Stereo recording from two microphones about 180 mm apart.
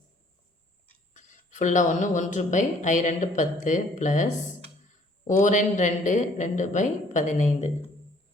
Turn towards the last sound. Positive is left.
turn(degrees=40)  # may be behind; listen again after turning